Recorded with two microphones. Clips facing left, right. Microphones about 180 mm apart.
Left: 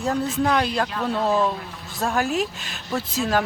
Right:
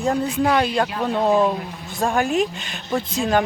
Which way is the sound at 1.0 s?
20° right (ahead or behind).